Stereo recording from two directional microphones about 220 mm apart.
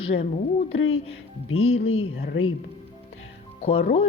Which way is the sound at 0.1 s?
25° left (ahead or behind).